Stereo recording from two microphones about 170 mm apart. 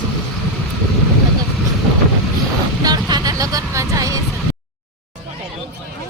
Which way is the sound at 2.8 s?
25° right (ahead or behind).